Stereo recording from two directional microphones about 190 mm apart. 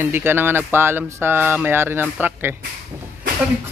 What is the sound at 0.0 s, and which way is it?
Speech, 10° right (ahead or behind).